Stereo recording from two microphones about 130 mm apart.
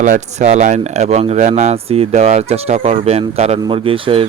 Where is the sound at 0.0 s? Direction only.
70° right (ahead or behind).